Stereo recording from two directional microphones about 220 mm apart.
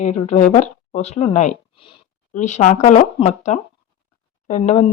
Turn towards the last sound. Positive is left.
turn(degrees=30)  # may be behind; listen again after turning